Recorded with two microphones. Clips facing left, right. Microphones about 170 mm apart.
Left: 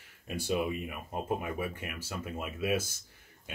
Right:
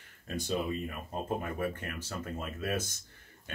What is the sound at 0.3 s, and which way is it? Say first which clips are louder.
Speech: left 1 dB; 10° left (ahead or behind).